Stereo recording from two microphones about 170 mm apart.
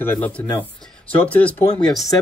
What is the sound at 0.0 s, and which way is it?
Speech, 10° left (ahead or behind).